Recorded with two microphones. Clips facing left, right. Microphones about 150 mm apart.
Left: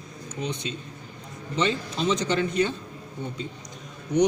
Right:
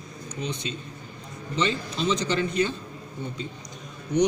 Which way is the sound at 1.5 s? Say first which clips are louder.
Left 1 dB; 50° left (ahead or behind).